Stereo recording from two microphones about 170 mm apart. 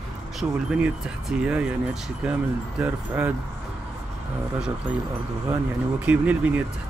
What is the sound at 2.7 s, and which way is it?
Speech, 10° right (ahead or behind).